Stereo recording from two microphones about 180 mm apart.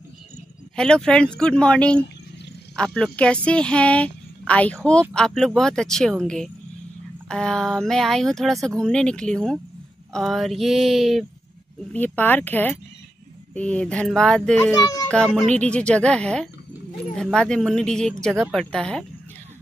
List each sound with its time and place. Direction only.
0.7 s speech: 5° left (ahead or behind)
14.7 s a child's voice: 20° left (ahead or behind)
15.2 s speech: centre (ahead or behind)